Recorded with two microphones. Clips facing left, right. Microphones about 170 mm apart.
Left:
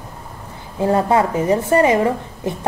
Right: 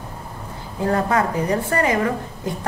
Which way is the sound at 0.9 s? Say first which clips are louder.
Left 4 dB; 25° left (ahead or behind).